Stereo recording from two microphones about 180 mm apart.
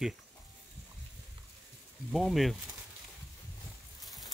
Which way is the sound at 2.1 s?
Centre (ahead or behind).